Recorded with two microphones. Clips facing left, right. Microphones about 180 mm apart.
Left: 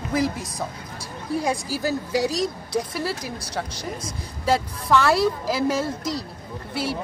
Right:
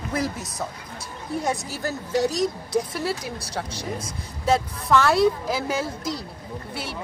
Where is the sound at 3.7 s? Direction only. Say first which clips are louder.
Right 1 dB; 30° right (ahead or behind).